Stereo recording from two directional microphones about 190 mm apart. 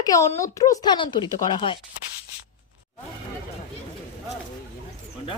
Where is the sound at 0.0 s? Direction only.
15° left (ahead or behind).